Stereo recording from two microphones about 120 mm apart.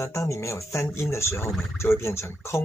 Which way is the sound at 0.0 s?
25° left (ahead or behind).